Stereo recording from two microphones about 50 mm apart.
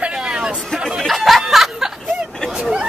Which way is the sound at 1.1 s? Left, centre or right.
Centre.